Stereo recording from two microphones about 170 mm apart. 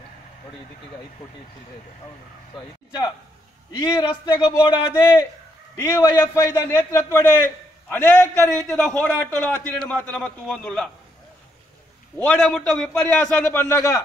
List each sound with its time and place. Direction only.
3.7 s a man's voice: 20° left (ahead or behind)
12.2 s a man's voice: 10° left (ahead or behind)